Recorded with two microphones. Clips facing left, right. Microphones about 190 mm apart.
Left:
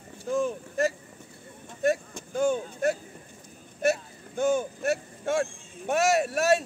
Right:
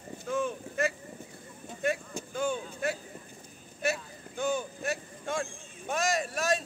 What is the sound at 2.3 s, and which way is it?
Vehicle, 45° left (ahead or behind).